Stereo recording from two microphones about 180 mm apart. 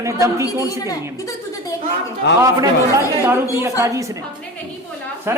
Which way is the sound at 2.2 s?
75° left (ahead or behind).